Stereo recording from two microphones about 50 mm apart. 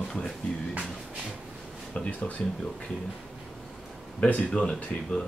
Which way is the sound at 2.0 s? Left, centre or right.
Left.